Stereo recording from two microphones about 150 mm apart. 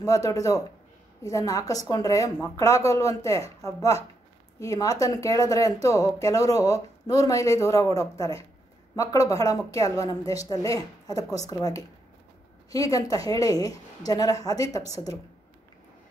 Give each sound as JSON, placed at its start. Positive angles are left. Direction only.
{"t": 0.0, "sound": "speech", "side_deg": 25}